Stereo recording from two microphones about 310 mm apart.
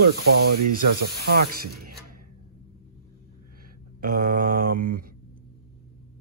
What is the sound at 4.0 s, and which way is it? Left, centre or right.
Mantra, right.